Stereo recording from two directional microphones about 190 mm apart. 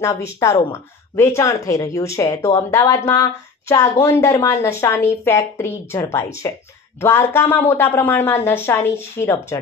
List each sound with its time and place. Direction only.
0.0 s a woman's voice: 15° left (ahead or behind)